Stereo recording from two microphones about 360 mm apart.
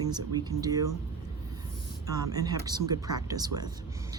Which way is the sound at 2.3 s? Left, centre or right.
Centre.